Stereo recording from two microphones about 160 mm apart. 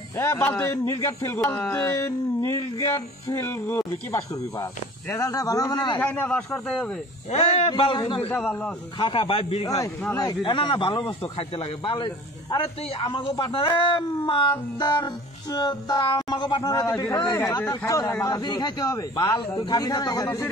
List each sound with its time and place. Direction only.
0.2 s a man's voice: 15° left (ahead or behind)
5.9 s a man's voice: 10° left (ahead or behind)
7.2 s speech: 40° left (ahead or behind)
8.3 s speech: 5° left (ahead or behind)
9.0 s speech: 30° left (ahead or behind)